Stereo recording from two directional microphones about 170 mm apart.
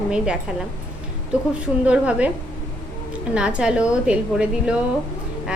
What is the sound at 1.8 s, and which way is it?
Speech, 5° right (ahead or behind).